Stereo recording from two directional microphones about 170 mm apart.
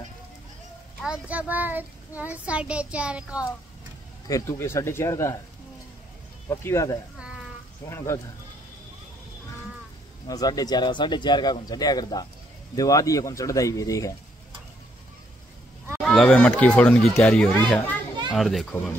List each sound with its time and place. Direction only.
1.0 s a child's voice: 5° right (ahead or behind)
4.3 s speech: 15° left (ahead or behind)
6.5 s speech: 15° left (ahead or behind)
10.2 s speech: 20° left (ahead or behind)
16.0 s speech: centre (ahead or behind)